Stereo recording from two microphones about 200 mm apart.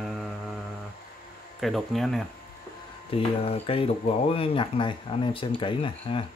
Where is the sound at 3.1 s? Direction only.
30° left (ahead or behind).